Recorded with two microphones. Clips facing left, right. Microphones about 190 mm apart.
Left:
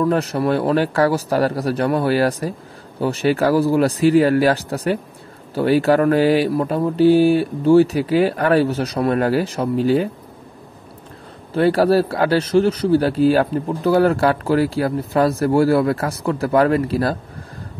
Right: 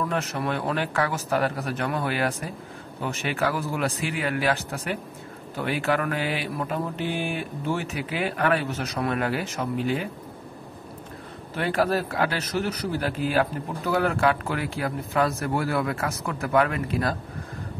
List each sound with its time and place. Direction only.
0.1 s speech: 35° left (ahead or behind)
11.5 s speech: 35° left (ahead or behind)